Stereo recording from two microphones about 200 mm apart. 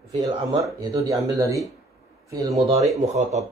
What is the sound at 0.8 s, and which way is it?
A man's voice, 15° right (ahead or behind).